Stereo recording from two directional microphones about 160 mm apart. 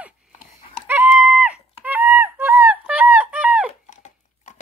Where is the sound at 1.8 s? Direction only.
10° right (ahead or behind).